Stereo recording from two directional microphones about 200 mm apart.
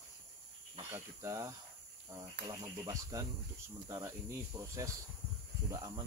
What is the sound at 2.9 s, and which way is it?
Speech, 20° right (ahead or behind).